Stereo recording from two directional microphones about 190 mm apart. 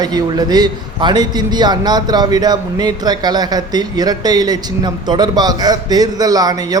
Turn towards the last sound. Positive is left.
turn(degrees=-20)  # may be behind; listen again after turning